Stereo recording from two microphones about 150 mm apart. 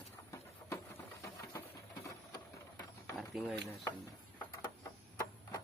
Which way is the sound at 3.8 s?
25° left (ahead or behind).